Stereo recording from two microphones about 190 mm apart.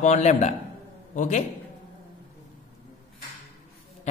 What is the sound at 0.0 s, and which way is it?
A man's voice, 40° left (ahead or behind).